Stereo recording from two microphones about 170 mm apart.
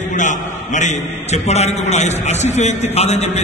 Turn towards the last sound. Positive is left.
turn(degrees=40)  # may be behind; listen again after turning